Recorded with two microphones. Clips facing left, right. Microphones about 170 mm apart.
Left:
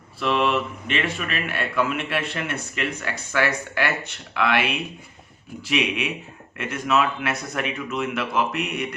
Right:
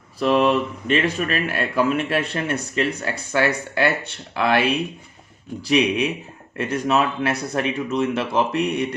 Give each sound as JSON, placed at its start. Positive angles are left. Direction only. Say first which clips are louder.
{"t": 0.2, "sound": "speech", "louder": "right 4 dB", "side_deg": -40}